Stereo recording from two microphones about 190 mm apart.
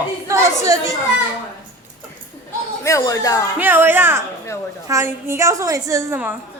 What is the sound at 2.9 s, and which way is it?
Speech, 15° left (ahead or behind).